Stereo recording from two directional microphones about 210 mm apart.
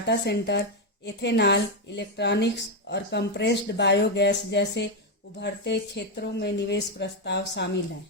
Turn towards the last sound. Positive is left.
turn(degrees=55)  # may be behind; listen again after turning